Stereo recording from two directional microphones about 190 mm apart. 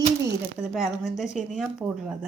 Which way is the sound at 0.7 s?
Centre (ahead or behind).